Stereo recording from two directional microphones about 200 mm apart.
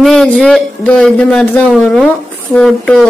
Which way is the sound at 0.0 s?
Centre (ahead or behind).